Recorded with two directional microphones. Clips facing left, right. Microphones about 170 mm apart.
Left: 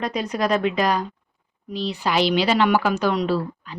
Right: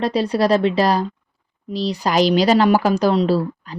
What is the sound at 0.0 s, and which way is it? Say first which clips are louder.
Speech: right 6 dB; 30° right (ahead or behind).